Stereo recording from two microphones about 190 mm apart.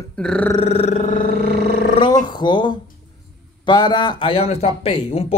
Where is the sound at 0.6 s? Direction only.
30° left (ahead or behind).